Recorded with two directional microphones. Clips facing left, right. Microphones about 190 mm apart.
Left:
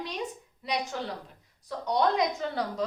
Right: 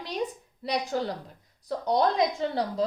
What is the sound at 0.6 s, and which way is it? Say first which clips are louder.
A woman's voice: right 4 dB; 35° right (ahead or behind).